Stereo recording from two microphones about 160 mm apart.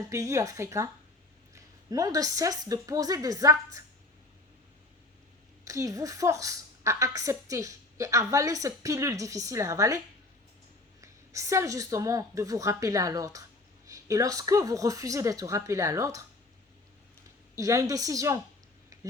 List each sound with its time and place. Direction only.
0.1 s a woman's voice: 20° right (ahead or behind)
5.6 s a woman's voice: 20° right (ahead or behind)
11.0 s a woman's voice: 20° right (ahead or behind)
17.5 s a woman's voice: 20° right (ahead or behind)